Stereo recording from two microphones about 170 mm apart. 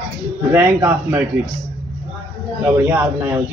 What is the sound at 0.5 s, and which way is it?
Speech, 15° right (ahead or behind).